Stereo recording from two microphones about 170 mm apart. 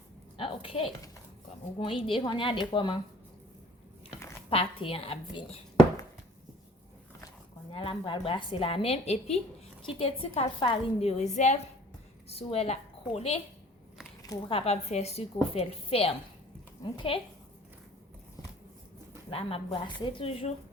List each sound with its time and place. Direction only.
0.3 s a sound: 30° left (ahead or behind)
1.8 s a woman's voice: 30° left (ahead or behind)
4.4 s a woman's voice: 35° left (ahead or behind)
7.7 s a woman's voice: 30° left (ahead or behind)
11.2 s a woman's voice: 45° left (ahead or behind)
14.2 s a woman's voice: 25° left (ahead or behind)
19.3 s a woman's voice: 35° left (ahead or behind)